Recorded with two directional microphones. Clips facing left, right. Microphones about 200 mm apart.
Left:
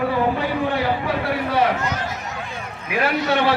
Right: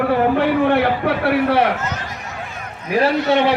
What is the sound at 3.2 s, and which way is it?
Speech, 20° right (ahead or behind).